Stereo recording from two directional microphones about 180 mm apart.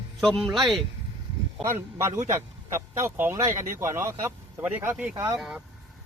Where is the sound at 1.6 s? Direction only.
15° right (ahead or behind).